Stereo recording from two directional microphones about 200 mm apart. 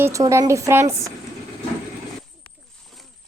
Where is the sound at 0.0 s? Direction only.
15° right (ahead or behind).